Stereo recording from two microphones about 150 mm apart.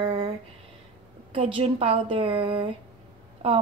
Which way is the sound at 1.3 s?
35° right (ahead or behind).